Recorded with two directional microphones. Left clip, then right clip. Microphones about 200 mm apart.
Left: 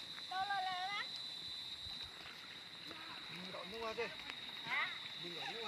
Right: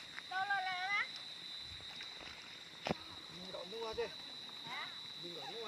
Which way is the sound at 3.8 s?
35° left (ahead or behind).